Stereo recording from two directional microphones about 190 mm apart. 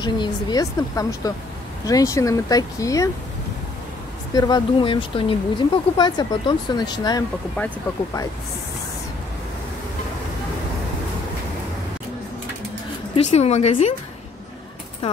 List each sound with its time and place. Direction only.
0.0 s speech: 20° left (ahead or behind)
4.3 s speech: 20° left (ahead or behind)
13.1 s a woman's voice: 35° left (ahead or behind)